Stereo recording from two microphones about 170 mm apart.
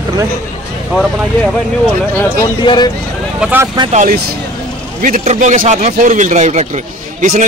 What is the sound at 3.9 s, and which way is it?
Speech, 45° right (ahead or behind).